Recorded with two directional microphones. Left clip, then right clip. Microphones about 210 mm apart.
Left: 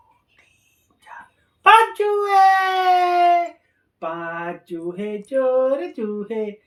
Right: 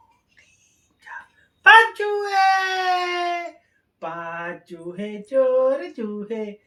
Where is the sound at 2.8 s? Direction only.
20° right (ahead or behind).